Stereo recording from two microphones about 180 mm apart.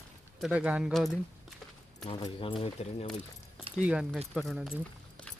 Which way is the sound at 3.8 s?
5° right (ahead or behind).